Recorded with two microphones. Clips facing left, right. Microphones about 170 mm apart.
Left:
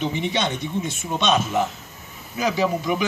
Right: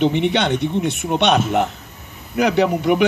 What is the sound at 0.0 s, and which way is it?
A man's voice, 65° right (ahead or behind).